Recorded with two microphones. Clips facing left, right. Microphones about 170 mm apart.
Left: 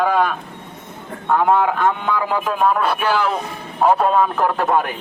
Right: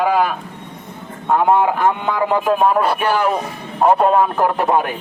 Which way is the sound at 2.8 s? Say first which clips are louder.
Right 2 dB; centre (ahead or behind).